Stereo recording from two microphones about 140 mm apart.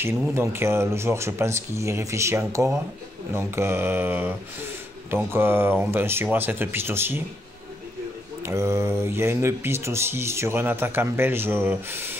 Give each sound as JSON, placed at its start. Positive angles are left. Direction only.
{"t": 0.3, "sound": "speech", "side_deg": -20}
{"t": 8.4, "sound": "speech", "side_deg": -20}